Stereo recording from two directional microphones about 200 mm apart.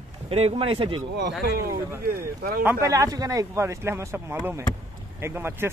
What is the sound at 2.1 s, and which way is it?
Speech, 50° right (ahead or behind).